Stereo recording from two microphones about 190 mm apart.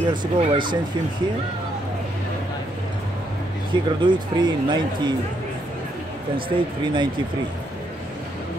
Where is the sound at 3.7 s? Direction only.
25° right (ahead or behind).